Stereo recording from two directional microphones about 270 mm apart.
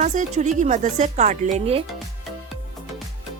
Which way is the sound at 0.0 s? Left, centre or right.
Right.